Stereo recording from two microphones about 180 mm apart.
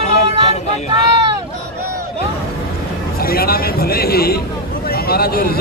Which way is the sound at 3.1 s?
55° left (ahead or behind).